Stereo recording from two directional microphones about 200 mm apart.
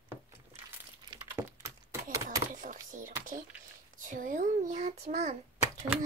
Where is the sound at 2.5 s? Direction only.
40° right (ahead or behind).